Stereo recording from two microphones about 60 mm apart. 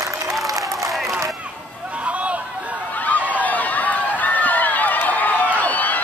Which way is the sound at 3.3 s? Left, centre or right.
Left.